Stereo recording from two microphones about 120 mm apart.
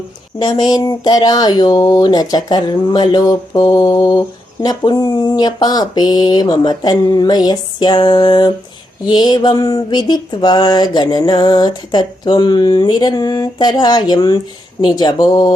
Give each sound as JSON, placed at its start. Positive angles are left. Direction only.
{"t": 0.3, "sound": "speech", "side_deg": 35}